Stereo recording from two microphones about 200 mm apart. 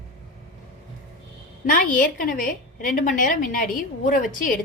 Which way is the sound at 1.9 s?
45° left (ahead or behind).